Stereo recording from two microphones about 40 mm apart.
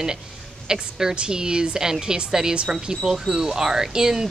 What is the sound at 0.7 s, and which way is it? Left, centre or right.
A woman's voice, centre.